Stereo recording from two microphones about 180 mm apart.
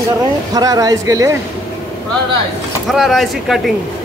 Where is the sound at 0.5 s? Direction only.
20° right (ahead or behind).